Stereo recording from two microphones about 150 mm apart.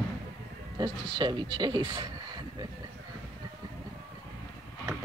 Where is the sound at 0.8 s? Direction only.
30° right (ahead or behind).